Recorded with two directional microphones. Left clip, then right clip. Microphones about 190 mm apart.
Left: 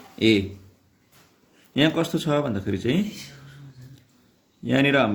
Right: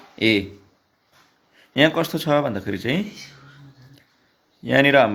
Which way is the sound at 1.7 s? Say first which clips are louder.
Right 4 dB; 20° right (ahead or behind).